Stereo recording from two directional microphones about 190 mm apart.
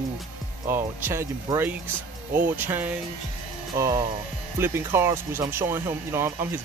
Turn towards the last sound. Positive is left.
turn(degrees=-10)  # may be behind; listen again after turning